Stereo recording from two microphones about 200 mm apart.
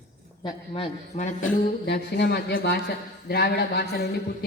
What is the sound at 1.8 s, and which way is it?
A man's voice, 55° left (ahead or behind).